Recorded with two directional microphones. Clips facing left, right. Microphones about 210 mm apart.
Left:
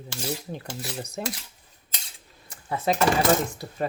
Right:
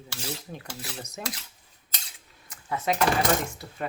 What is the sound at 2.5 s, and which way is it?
Cutlery, 30° left (ahead or behind).